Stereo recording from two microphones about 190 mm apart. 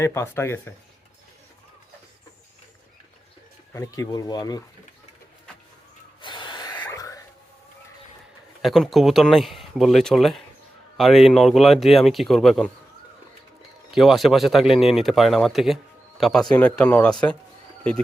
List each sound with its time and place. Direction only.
0.0 s speech: 15° left (ahead or behind)
3.7 s speech: 15° left (ahead or behind)
6.2 s snort: 25° left (ahead or behind)
6.7 s a sound: 15° left (ahead or behind)
8.6 s speech: centre (ahead or behind)
13.9 s speech: centre (ahead or behind)